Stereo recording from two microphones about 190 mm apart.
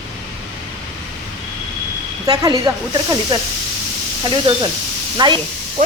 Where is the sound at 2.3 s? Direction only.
20° right (ahead or behind).